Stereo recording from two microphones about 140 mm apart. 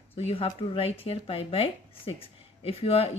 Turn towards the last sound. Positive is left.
turn(degrees=45)  # may be behind; listen again after turning